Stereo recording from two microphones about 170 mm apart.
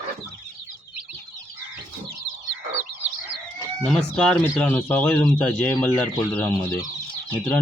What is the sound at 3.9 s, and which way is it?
Speech, 5° left (ahead or behind).